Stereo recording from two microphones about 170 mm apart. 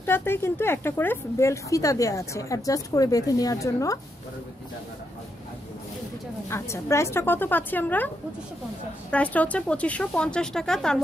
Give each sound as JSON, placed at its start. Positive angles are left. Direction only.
{"t": 0.0, "sound": "speech", "side_deg": 15}
{"t": 6.5, "sound": "speech", "side_deg": 15}
{"t": 9.1, "sound": "speech", "side_deg": 10}